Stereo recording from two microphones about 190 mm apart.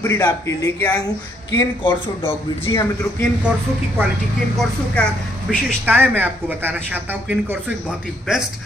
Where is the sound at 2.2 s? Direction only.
15° left (ahead or behind).